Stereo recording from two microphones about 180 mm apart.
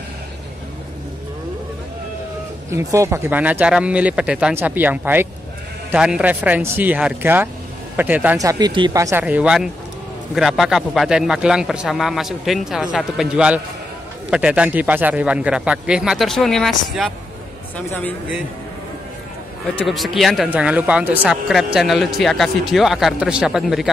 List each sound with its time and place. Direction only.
2.7 s speech: 15° right (ahead or behind)
8.4 s speech: 20° right (ahead or behind)
9.2 s speech: 5° right (ahead or behind); by 18.1 s 10° left (ahead or behind)
19.7 s speech: 5° left (ahead or behind)